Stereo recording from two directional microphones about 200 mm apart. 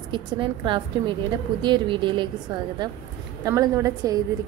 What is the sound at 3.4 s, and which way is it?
Speech, 15° right (ahead or behind).